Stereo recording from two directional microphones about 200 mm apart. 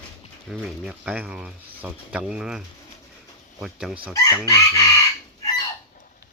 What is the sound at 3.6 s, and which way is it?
Speech, centre (ahead or behind).